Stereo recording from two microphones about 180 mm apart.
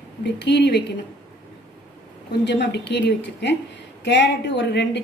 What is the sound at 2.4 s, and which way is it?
A woman's voice, 75° left (ahead or behind).